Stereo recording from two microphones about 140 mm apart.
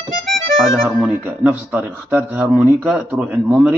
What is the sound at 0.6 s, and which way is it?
A man's voice, centre (ahead or behind).